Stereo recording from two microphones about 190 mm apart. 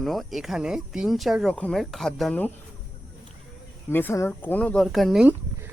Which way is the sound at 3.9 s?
10° left (ahead or behind).